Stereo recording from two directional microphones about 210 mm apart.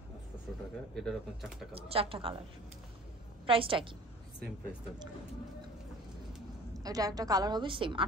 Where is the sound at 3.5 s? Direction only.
25° right (ahead or behind).